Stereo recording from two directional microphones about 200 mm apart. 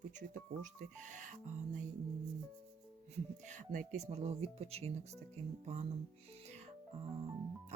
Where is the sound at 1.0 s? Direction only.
40° right (ahead or behind).